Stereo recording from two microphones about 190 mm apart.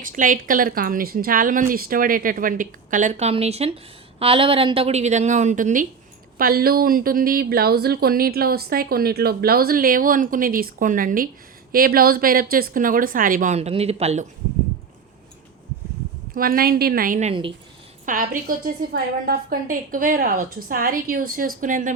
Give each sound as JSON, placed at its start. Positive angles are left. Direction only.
{"t": 0.0, "sound": "a woman's voice", "side_deg": -45}
{"t": 16.3, "sound": "speech", "side_deg": -50}